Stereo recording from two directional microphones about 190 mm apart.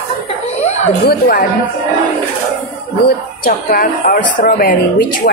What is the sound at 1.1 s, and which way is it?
Speech, 50° left (ahead or behind).